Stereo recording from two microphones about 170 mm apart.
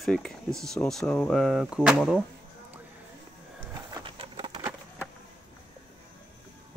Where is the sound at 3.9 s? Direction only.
30° right (ahead or behind).